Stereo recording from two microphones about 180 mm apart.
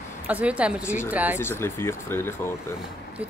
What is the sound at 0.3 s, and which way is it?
Speech, 5° right (ahead or behind).